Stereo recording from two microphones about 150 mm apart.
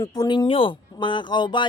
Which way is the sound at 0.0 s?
25° left (ahead or behind).